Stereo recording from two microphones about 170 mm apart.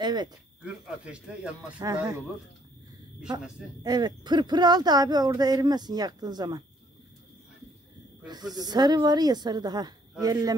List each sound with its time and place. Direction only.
0.0 s speech: 25° right (ahead or behind)
0.7 s speech: 5° right (ahead or behind)
1.8 s speech: 20° right (ahead or behind)
3.8 s speech: 25° right (ahead or behind)
8.5 s speech: 25° right (ahead or behind)